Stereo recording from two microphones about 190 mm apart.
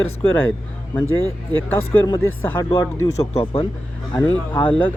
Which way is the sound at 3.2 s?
30° left (ahead or behind).